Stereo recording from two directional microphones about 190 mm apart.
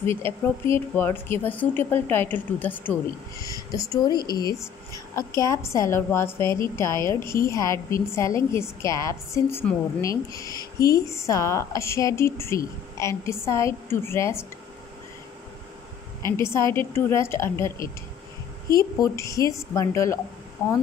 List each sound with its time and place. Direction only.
0.0 s a woman's voice: 15° left (ahead or behind)
16.3 s a woman's voice: 15° left (ahead or behind)